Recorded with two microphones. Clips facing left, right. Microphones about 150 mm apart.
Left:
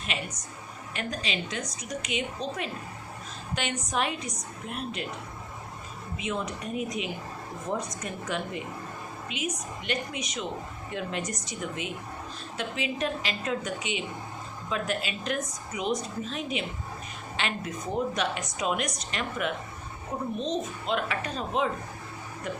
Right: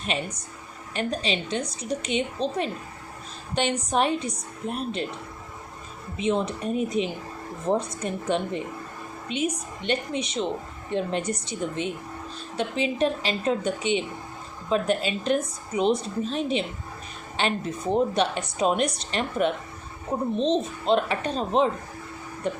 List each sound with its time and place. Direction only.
0.0 s a woman's voice: 30° right (ahead or behind)
6.1 s a woman's voice: 30° right (ahead or behind)